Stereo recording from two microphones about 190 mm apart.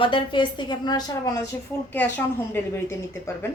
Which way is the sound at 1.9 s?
10° left (ahead or behind).